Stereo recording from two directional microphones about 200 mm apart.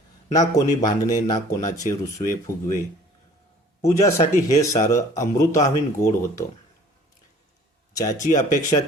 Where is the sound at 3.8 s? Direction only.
15° left (ahead or behind).